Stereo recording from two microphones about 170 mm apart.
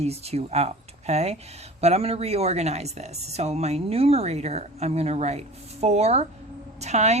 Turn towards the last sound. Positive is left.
turn(degrees=-40)  # may be behind; listen again after turning